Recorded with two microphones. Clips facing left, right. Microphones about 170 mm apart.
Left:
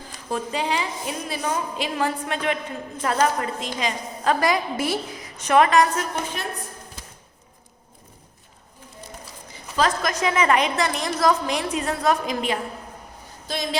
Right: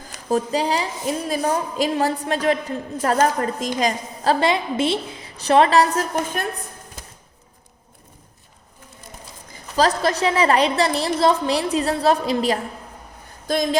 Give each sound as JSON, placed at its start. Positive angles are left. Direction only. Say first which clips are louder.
{"t": 0.3, "sound": "a woman's voice", "louder": "right 5 dB", "side_deg": -40}
{"t": 7.0, "sound": "a sound", "louder": "right 2 dB", "side_deg": -50}
{"t": 9.7, "sound": "a woman's voice", "louder": "right 4 dB", "side_deg": -35}
{"t": 13.5, "sound": "speech", "louder": "right 7 dB", "side_deg": -45}